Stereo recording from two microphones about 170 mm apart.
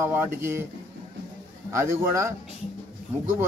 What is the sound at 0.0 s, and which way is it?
Speech, 10° right (ahead or behind).